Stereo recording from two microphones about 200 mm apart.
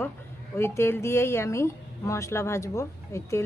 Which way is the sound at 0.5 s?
10° left (ahead or behind).